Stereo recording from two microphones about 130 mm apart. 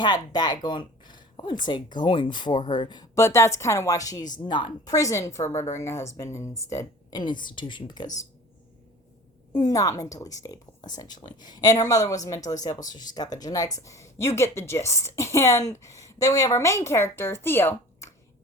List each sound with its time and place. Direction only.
0.0 s speech: 30° left (ahead or behind)
4.9 s a woman's voice: 25° left (ahead or behind)
7.2 s speech: 35° left (ahead or behind)
9.5 s a woman's voice: 30° left (ahead or behind)